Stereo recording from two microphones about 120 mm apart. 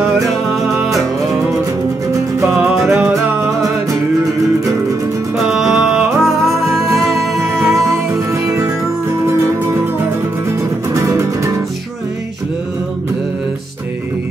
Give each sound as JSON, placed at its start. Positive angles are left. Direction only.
{"t": 0.0, "sound": "music", "side_deg": -5}
{"t": 2.8, "sound": "music", "side_deg": -5}
{"t": 5.5, "sound": "music", "side_deg": -5}
{"t": 7.5, "sound": "music", "side_deg": -20}
{"t": 11.0, "sound": "music", "side_deg": -25}